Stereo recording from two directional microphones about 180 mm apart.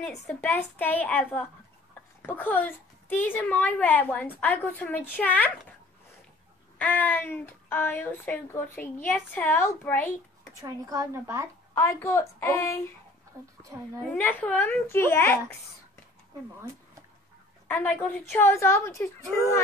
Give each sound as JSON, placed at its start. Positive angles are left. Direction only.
{"t": 0.3, "sound": "a woman's voice", "side_deg": 10}
{"t": 6.8, "sound": "a woman's voice", "side_deg": 10}
{"t": 10.6, "sound": "a woman's voice", "side_deg": -20}
{"t": 11.7, "sound": "a woman's voice", "side_deg": 15}
{"t": 14.1, "sound": "a woman's voice", "side_deg": 10}
{"t": 17.6, "sound": "a woman's voice", "side_deg": 10}